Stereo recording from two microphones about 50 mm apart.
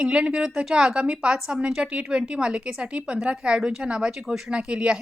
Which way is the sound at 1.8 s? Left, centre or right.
Right.